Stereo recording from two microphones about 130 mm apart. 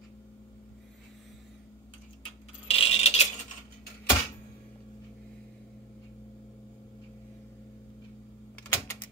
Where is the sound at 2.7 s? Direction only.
50° left (ahead or behind).